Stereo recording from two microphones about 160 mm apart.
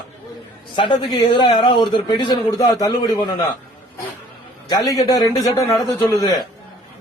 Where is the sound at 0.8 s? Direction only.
30° left (ahead or behind).